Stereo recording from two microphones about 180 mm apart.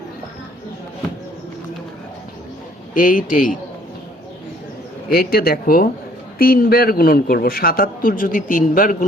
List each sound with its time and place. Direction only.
2.9 s speech: 50° left (ahead or behind)
5.0 s speech: 55° left (ahead or behind)